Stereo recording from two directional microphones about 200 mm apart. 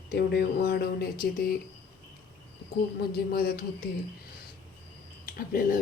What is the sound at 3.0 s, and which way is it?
Speech, 50° left (ahead or behind).